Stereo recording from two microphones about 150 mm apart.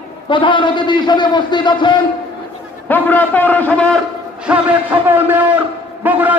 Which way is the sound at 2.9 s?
10° left (ahead or behind).